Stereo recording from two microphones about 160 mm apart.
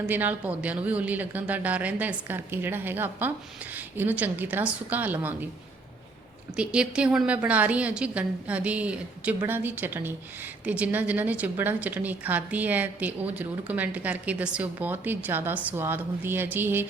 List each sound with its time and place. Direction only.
0.0 s a woman's voice: 10° right (ahead or behind)
6.6 s a woman's voice: 5° right (ahead or behind)